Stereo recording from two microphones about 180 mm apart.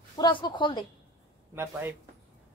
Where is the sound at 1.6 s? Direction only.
15° right (ahead or behind).